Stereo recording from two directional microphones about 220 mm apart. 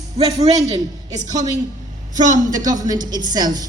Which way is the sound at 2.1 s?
35° right (ahead or behind).